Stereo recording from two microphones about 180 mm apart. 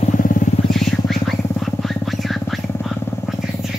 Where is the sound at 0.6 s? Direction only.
Centre (ahead or behind).